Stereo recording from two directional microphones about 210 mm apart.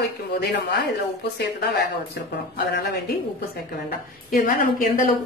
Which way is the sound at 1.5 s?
50° left (ahead or behind).